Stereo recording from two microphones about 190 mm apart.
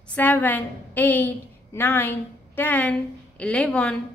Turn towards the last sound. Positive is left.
turn(degrees=5)  # may be behind; listen again after turning